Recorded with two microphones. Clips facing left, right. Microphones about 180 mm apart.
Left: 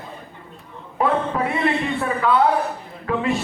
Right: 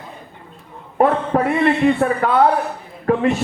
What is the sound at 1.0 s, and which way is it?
Speech, 45° right (ahead or behind).